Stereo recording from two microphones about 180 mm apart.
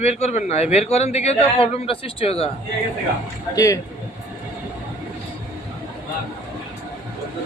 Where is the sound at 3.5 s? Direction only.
20° left (ahead or behind).